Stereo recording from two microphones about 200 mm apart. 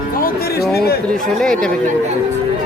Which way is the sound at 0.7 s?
50° left (ahead or behind).